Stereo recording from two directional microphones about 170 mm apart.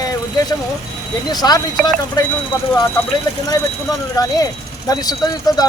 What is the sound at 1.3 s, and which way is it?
Speech, 25° left (ahead or behind).